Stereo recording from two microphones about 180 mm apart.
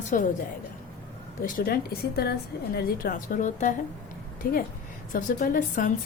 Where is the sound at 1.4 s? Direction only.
50° left (ahead or behind).